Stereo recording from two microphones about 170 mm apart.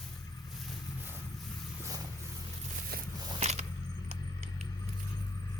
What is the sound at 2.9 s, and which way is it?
Biting, 65° right (ahead or behind).